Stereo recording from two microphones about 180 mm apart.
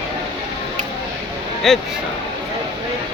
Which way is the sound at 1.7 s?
Centre (ahead or behind).